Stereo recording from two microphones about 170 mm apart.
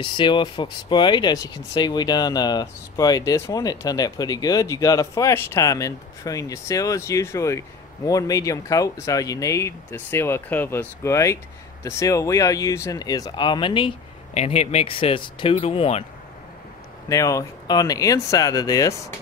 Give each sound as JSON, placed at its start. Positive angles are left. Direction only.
{"t": 0.0, "sound": "speech", "side_deg": 25}
{"t": 17.1, "sound": "speech", "side_deg": 20}